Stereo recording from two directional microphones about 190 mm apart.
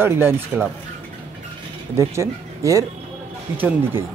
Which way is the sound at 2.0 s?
15° right (ahead or behind).